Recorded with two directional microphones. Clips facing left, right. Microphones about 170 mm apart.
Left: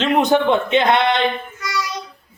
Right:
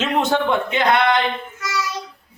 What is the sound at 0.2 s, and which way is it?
A man's voice, 20° left (ahead or behind).